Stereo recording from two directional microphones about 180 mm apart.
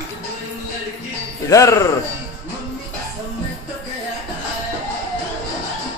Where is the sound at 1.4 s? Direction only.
20° left (ahead or behind).